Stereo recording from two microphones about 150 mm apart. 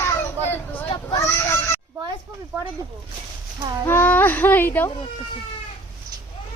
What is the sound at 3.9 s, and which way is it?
Speech, 15° left (ahead or behind).